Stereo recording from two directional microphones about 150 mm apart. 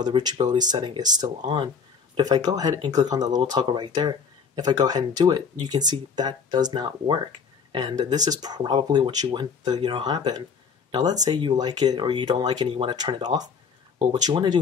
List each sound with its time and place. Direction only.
0.0 s speech: 30° right (ahead or behind)